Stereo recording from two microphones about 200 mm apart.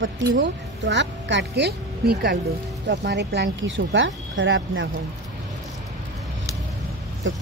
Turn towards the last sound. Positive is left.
turn(degrees=-65)  # may be behind; listen again after turning